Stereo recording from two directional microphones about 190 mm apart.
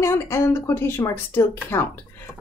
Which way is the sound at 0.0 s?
15° left (ahead or behind).